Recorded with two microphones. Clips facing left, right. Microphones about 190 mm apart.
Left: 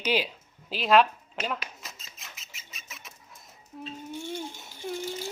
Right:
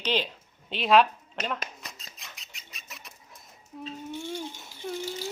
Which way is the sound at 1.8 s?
Centre (ahead or behind).